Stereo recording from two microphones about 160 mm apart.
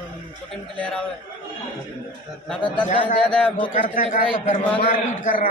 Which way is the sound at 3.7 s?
55° left (ahead or behind).